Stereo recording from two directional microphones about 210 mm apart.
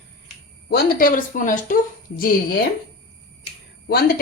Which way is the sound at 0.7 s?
45° left (ahead or behind).